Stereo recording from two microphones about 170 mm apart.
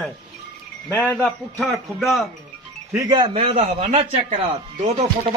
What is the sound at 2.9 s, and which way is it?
A man's voice, 25° right (ahead or behind).